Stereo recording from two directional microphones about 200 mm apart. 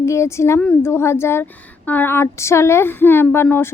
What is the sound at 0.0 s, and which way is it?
A woman's voice, 15° left (ahead or behind).